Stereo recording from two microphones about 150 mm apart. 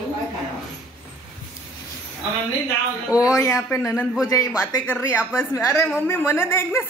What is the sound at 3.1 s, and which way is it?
A woman's voice, 20° left (ahead or behind).